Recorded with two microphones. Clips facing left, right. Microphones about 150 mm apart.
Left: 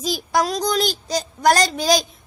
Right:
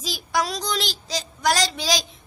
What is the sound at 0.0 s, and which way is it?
A woman's voice, 45° left (ahead or behind).